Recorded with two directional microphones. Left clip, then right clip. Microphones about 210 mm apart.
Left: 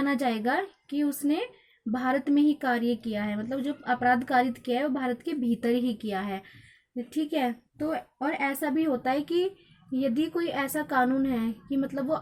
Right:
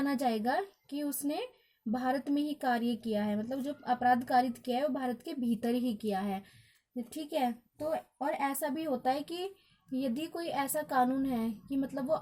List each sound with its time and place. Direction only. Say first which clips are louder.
0.2 s a woman's voice: left 4 dB; 50° right (ahead or behind)
11.9 s a woman's voice: left 2 dB; 25° right (ahead or behind)